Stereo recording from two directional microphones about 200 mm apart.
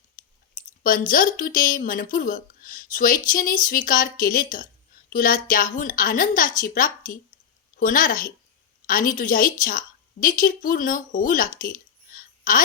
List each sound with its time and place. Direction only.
0.8 s a woman's voice: 45° left (ahead or behind)